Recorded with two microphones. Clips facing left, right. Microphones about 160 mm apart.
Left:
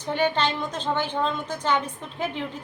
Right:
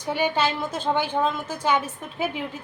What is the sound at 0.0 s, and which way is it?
A woman's voice, 10° right (ahead or behind).